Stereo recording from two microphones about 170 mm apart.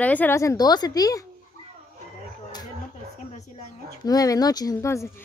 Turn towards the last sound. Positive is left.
turn(degrees=15)  # may be behind; listen again after turning